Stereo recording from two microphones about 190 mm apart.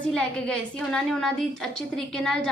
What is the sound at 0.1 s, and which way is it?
A woman's voice, 5° left (ahead or behind).